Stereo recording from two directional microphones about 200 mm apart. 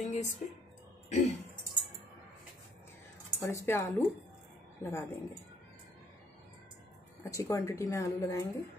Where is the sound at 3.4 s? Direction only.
15° left (ahead or behind).